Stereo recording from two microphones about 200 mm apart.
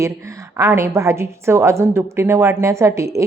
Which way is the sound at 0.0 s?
15° right (ahead or behind).